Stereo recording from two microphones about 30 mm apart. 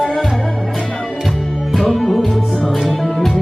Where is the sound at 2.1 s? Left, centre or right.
Centre.